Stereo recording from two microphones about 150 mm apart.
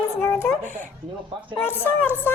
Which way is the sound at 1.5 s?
15° left (ahead or behind).